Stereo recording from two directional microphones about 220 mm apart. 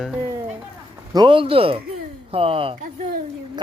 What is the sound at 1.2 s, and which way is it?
Speech, 20° right (ahead or behind).